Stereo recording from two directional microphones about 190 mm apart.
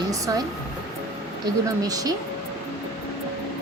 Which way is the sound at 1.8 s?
20° right (ahead or behind).